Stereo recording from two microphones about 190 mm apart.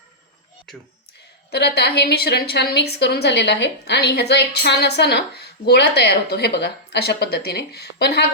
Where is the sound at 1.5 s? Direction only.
60° left (ahead or behind).